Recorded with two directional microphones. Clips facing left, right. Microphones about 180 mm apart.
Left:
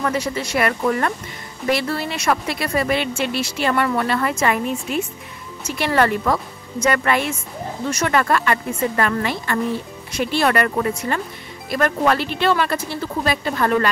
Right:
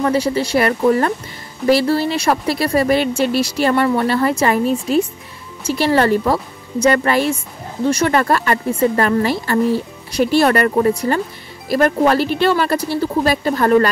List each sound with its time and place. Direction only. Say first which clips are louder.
0.0 s speech: right 6 dB; 30° right (ahead or behind)